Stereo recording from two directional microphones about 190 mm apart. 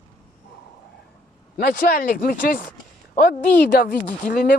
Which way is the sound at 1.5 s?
50° left (ahead or behind).